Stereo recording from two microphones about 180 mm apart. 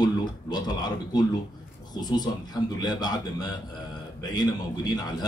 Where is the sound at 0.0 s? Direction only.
25° left (ahead or behind).